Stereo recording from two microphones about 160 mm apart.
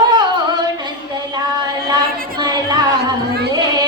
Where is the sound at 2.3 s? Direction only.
25° right (ahead or behind).